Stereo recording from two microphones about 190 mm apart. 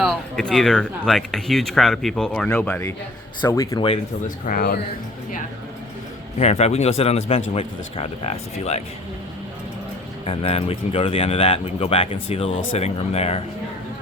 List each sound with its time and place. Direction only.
0.0 s speech: centre (ahead or behind)
4.4 s speech: 50° left (ahead or behind)
6.4 s speech: 35° left (ahead or behind)
10.2 s speech: 30° left (ahead or behind)